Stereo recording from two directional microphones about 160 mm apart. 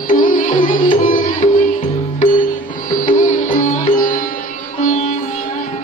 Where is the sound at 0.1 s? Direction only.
55° left (ahead or behind).